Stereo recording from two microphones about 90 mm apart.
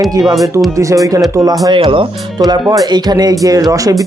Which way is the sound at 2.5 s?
45° right (ahead or behind).